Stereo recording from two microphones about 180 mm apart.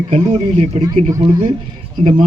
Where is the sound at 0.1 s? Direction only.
35° right (ahead or behind).